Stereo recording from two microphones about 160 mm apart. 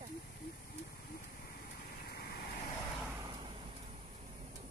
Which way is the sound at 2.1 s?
85° left.